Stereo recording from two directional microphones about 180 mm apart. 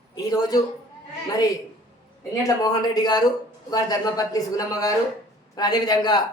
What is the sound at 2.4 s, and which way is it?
A woman's voice, 20° left (ahead or behind).